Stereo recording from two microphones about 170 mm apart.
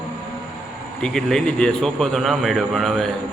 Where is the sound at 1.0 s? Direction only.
5° left (ahead or behind).